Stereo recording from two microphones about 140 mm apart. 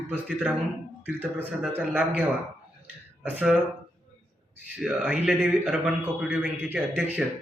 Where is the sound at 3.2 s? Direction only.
10° right (ahead or behind).